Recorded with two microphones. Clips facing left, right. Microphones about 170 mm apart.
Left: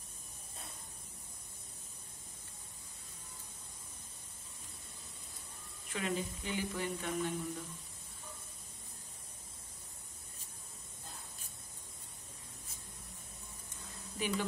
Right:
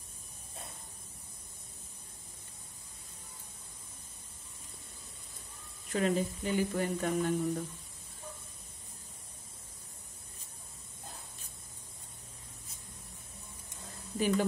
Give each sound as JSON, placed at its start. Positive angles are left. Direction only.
{"t": 5.9, "sound": "sizzle", "side_deg": -40}
{"t": 14.1, "sound": "speech", "side_deg": -45}